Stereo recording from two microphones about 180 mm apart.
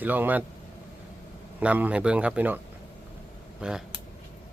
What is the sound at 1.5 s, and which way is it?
Speech, 10° right (ahead or behind).